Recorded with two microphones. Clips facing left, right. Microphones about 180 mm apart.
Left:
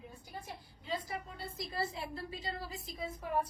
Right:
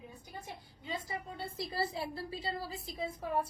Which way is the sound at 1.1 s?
30° right (ahead or behind).